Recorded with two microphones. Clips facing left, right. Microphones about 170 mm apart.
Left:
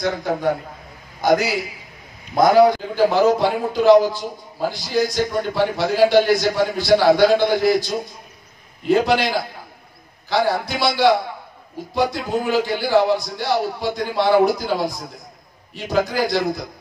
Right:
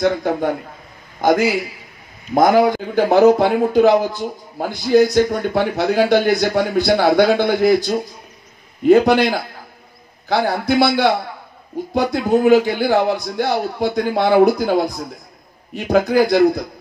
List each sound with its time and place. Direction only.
0.0 s a man's voice: 50° right (ahead or behind)